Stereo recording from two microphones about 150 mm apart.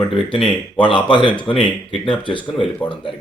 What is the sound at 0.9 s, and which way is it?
Speech, 35° left (ahead or behind).